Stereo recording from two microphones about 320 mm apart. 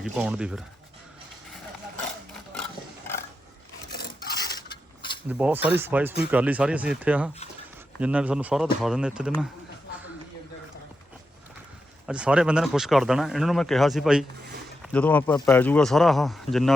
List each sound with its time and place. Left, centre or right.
0.0 s speech: centre
3.9 s filing: left
5.3 s speech: centre
12.0 s speech: centre